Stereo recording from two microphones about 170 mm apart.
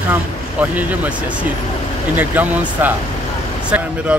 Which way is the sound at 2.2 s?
10° right (ahead or behind).